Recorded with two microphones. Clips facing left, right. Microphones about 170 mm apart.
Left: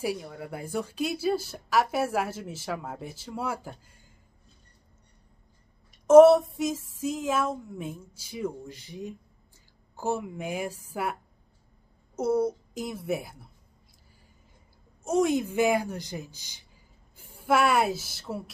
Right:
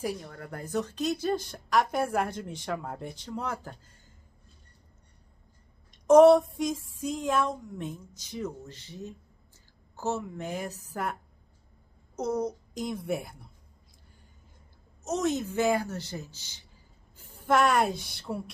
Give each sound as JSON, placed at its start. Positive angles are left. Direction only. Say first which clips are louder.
{"t": 0.0, "sound": "speech", "louder": "left 3 dB", "side_deg": 10}
{"t": 6.0, "sound": "speech", "louder": "left 2 dB", "side_deg": 0}
{"t": 12.2, "sound": "speech", "louder": "left 4 dB", "side_deg": 10}
{"t": 15.0, "sound": "a woman's voice", "louder": "left 4 dB", "side_deg": 10}